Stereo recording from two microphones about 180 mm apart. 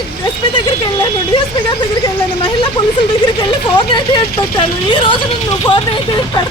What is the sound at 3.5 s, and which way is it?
Speech, 30° left (ahead or behind).